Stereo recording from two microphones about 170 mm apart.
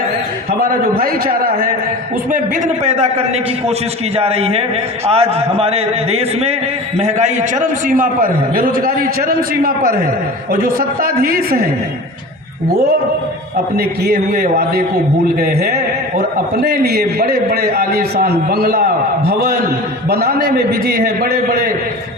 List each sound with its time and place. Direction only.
0.6 s a man's voice: 55° right (ahead or behind)
2.3 s a man's voice: 40° right (ahead or behind); by 11.7 s 60° right (ahead or behind)
13.7 s a man's voice: 65° right (ahead or behind)